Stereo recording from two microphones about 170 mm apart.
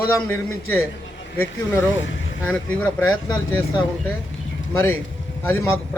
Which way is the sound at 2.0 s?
90° left.